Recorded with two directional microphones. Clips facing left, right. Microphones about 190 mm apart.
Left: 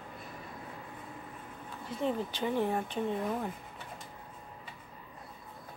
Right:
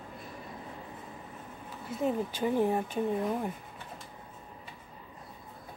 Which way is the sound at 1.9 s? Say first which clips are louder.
Right 2 dB; 5° right (ahead or behind).